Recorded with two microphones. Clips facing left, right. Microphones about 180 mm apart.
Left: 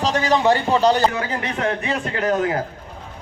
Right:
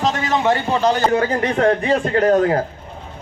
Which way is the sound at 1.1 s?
40° right (ahead or behind).